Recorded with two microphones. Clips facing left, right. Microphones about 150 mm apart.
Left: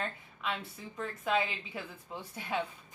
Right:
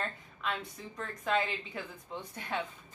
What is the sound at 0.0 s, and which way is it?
Speech, 5° left (ahead or behind).